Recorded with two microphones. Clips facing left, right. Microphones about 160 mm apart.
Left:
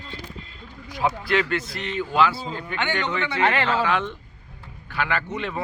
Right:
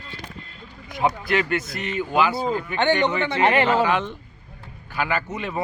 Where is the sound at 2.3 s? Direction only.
50° right (ahead or behind).